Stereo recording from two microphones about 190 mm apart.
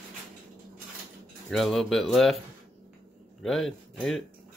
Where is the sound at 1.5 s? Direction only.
Centre (ahead or behind).